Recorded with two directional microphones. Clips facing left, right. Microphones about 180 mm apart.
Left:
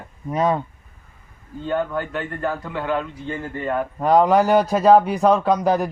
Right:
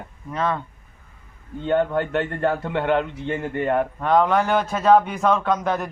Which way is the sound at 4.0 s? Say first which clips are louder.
Left 5 dB; 5° left (ahead or behind).